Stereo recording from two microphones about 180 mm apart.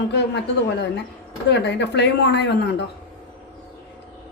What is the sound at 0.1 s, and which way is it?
A man's voice, 70° left (ahead or behind).